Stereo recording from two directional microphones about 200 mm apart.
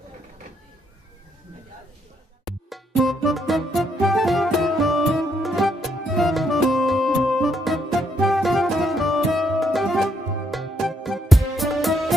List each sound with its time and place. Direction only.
2.4 s music: centre (ahead or behind)